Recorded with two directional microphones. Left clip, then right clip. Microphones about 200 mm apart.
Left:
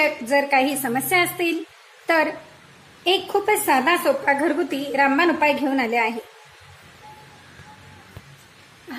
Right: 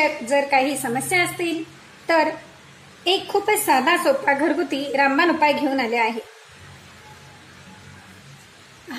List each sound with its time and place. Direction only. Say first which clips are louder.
0.0 s a woman's voice: even; 10° left (ahead or behind)
3.0 s a woman's voice: even; 5° left (ahead or behind)